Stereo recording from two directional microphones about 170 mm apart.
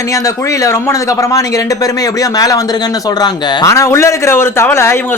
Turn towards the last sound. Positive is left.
turn(degrees=15)  # may be behind; listen again after turning